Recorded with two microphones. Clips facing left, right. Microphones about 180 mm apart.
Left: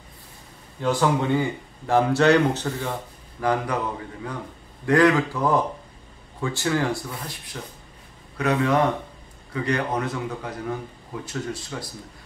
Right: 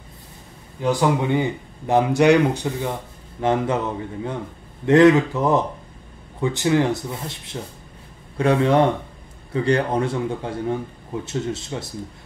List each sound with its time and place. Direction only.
0.8 s speech: 15° right (ahead or behind)